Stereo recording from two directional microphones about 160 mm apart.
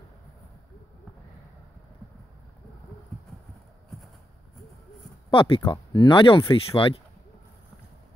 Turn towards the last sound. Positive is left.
turn(degrees=35)  # may be behind; listen again after turning